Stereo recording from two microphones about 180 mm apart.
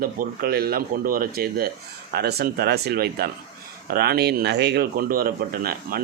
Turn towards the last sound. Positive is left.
turn(degrees=-55)  # may be behind; listen again after turning